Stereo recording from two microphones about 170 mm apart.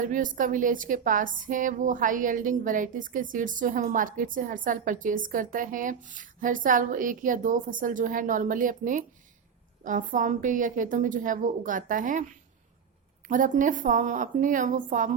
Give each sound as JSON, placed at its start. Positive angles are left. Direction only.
{"t": 0.0, "sound": "speech", "side_deg": -50}
{"t": 13.2, "sound": "speech", "side_deg": -50}